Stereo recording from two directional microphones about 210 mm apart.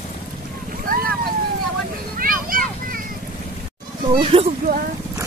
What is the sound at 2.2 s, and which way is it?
Vehicle, 40° right (ahead or behind).